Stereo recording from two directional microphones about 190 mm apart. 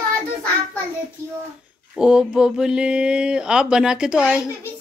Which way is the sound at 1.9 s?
5° right (ahead or behind).